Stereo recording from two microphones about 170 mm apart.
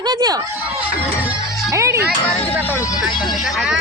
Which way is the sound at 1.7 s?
20° right (ahead or behind).